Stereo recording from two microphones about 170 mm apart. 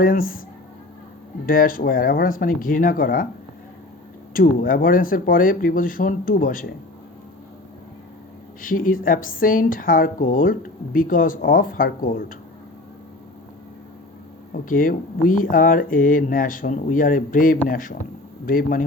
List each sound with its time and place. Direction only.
0.0 s speech: 55° left (ahead or behind)
1.5 s speech: 55° left (ahead or behind)
4.4 s speech: 55° left (ahead or behind)
8.6 s speech: 55° left (ahead or behind)
14.5 s speech: 55° left (ahead or behind)